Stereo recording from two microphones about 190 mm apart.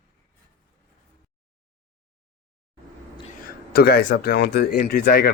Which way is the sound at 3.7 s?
55° left (ahead or behind).